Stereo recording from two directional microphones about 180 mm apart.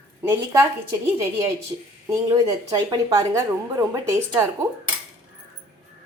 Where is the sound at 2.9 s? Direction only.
20° right (ahead or behind).